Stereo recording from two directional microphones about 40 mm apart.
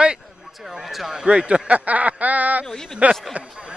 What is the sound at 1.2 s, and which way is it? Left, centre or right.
Speech, right.